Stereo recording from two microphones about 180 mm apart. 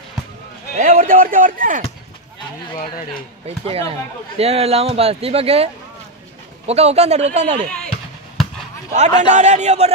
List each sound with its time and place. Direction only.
0.7 s speech: 45° right (ahead or behind)
3.4 s speech: 35° right (ahead or behind)
8.9 s speech: 40° right (ahead or behind)